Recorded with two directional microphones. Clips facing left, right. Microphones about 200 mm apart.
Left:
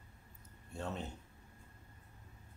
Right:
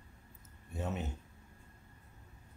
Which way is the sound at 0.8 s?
5° right (ahead or behind).